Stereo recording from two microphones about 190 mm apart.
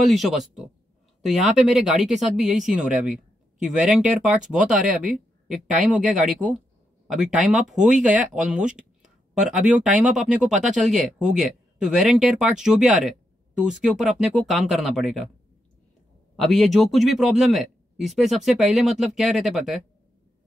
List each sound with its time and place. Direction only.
0.0 s speech: centre (ahead or behind)
16.3 s speech: centre (ahead or behind)